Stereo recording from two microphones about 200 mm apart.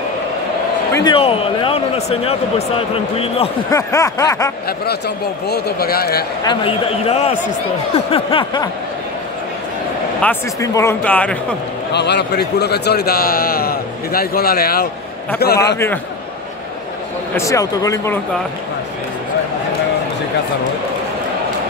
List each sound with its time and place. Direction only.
0.9 s speech: 25° left (ahead or behind)
3.7 s speech: 15° left (ahead or behind)
4.6 s speech: 55° left (ahead or behind)
6.4 s speech: 25° left (ahead or behind)
10.2 s speech: 15° left (ahead or behind)
11.9 s speech: 55° left (ahead or behind)
17.4 s speech: 15° left (ahead or behind)